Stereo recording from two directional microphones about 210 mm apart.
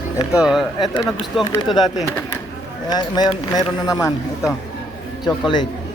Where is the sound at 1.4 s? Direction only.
15° left (ahead or behind).